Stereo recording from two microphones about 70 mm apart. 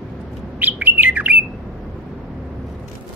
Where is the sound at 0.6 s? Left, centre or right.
Right.